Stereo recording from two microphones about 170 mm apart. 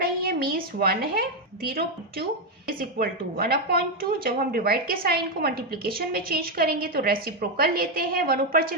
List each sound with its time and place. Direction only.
0.0 s a woman's voice: 60° right (ahead or behind)